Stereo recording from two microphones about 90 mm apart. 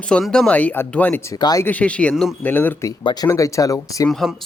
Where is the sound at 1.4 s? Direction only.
50° left (ahead or behind).